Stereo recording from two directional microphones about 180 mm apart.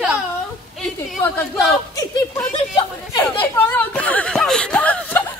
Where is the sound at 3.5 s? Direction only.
10° left (ahead or behind).